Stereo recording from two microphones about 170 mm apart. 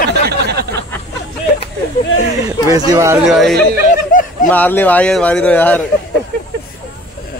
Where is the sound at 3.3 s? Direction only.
Centre (ahead or behind).